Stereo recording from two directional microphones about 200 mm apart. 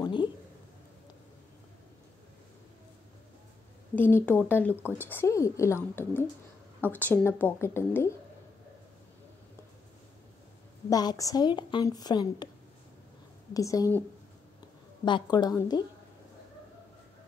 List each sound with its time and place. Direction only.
0.0 s a sound: 25° left (ahead or behind)
3.9 s a woman's voice: 10° left (ahead or behind)
10.9 s a woman's voice: 20° left (ahead or behind)
13.5 s a woman's voice: 15° left (ahead or behind)
15.0 s a woman's voice: 20° left (ahead or behind)